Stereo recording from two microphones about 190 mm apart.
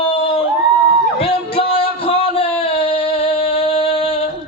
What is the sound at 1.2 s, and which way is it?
Music, 30° left (ahead or behind).